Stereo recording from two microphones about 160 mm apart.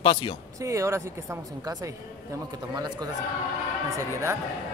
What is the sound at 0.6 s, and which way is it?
Speech, 20° right (ahead or behind).